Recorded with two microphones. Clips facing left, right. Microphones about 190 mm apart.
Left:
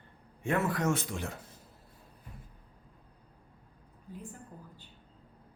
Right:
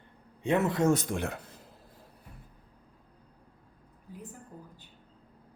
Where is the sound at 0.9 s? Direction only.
50° right (ahead or behind).